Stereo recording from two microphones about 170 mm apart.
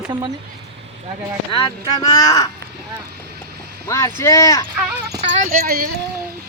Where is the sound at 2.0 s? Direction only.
20° left (ahead or behind).